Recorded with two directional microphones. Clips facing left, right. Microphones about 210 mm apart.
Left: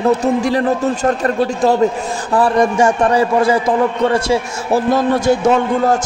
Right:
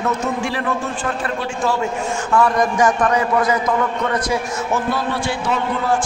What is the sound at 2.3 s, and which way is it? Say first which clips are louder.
A man's voice: left 4 dB; 30° left (ahead or behind).